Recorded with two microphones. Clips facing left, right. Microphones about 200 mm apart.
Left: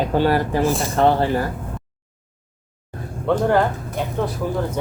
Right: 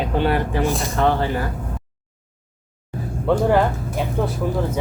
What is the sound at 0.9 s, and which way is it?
Speech, 40° left (ahead or behind).